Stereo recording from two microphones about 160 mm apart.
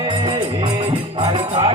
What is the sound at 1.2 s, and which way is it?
Music, 30° right (ahead or behind).